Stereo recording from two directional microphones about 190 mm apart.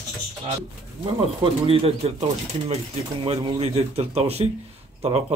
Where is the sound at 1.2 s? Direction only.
30° right (ahead or behind).